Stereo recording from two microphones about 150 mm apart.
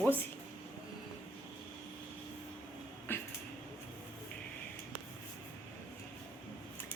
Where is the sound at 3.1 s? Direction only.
15° left (ahead or behind).